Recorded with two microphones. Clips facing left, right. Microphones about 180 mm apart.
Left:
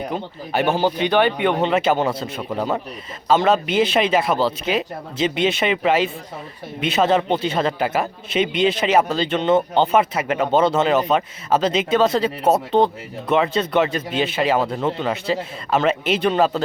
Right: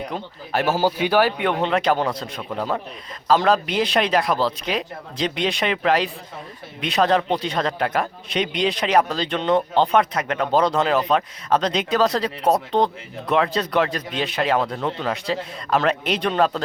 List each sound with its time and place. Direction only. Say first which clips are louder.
0.1 s a man's voice: left 2 dB; centre (ahead or behind)